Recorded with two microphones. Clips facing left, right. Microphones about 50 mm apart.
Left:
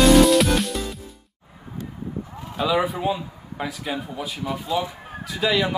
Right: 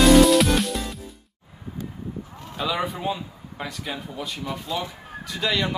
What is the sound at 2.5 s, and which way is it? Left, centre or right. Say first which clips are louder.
A man's voice: left 5 dB; centre.